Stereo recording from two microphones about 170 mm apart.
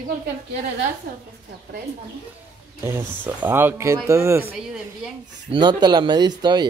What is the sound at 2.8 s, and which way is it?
Speech, 15° right (ahead or behind).